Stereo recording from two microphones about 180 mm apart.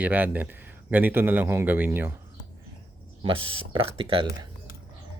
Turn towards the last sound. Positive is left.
turn(degrees=-30)  # may be behind; listen again after turning